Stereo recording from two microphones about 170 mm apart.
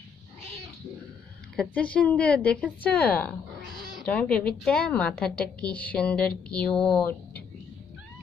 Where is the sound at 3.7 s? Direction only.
25° left (ahead or behind).